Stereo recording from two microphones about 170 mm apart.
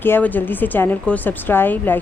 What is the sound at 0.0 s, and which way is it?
A woman's voice, 10° left (ahead or behind).